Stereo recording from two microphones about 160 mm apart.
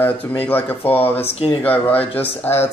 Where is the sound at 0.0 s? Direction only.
10° left (ahead or behind).